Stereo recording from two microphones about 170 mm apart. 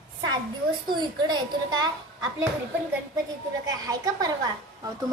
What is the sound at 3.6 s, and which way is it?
Speech, 20° right (ahead or behind).